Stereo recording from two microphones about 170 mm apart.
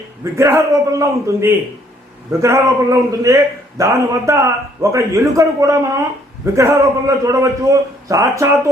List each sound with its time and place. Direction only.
0.3 s a man's voice: 15° right (ahead or behind)